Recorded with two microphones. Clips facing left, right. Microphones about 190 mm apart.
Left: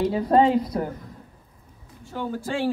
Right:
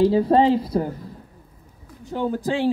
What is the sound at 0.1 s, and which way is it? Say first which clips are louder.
Speech: right 2 dB; 30° right (ahead or behind).